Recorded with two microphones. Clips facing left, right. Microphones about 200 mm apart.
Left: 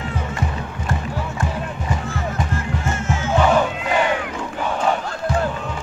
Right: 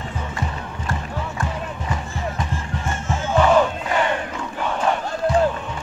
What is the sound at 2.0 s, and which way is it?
Music, 75° left (ahead or behind).